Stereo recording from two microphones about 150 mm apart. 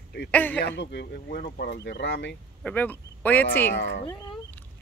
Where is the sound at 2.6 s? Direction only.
10° left (ahead or behind).